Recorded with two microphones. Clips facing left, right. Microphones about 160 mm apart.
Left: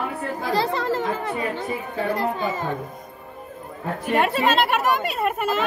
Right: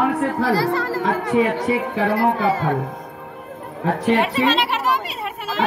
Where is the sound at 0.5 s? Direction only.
20° left (ahead or behind).